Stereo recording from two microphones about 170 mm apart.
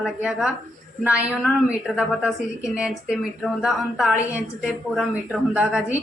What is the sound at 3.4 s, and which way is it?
A woman's voice, centre (ahead or behind).